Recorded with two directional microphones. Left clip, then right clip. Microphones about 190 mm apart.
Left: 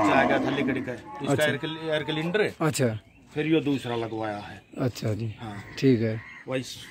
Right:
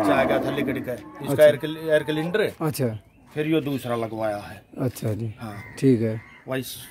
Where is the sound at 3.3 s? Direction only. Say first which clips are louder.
Right 1 dB; 65° right (ahead or behind).